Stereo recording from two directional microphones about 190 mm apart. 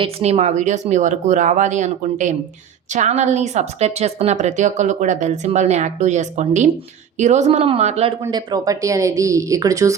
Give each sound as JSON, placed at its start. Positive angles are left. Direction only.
{"t": 0.0, "sound": "a woman's voice", "side_deg": -35}
{"t": 8.2, "sound": "speech", "side_deg": -20}